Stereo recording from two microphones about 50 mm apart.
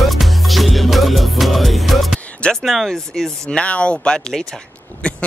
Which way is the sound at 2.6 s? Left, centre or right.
Centre.